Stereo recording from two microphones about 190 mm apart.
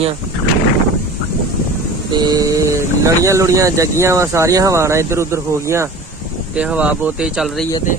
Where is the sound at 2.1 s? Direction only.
20° right (ahead or behind).